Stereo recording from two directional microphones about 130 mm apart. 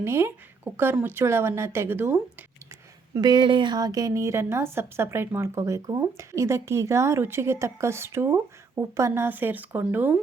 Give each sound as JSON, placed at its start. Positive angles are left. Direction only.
{"t": 0.0, "sound": "speech", "side_deg": -20}
{"t": 3.2, "sound": "a woman's voice", "side_deg": -35}